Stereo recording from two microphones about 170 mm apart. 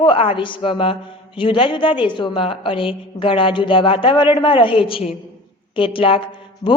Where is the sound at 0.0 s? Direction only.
30° left (ahead or behind).